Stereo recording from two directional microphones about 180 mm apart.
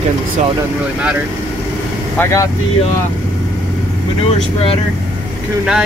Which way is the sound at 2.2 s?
15° left (ahead or behind).